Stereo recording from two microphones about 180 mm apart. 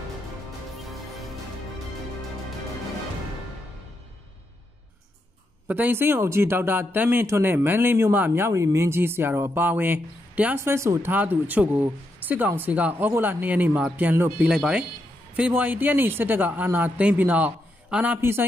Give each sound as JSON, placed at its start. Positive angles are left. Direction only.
{"t": 5.7, "sound": "speech", "side_deg": -10}